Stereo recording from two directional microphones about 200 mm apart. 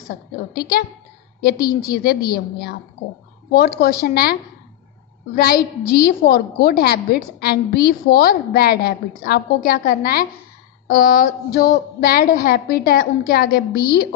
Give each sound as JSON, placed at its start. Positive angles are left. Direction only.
{"t": 0.6, "sound": "a woman's voice", "side_deg": 50}